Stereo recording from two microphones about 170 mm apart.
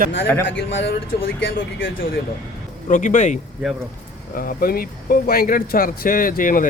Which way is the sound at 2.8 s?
50° left (ahead or behind).